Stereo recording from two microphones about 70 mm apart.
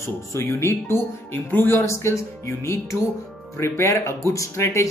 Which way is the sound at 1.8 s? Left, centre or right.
Left.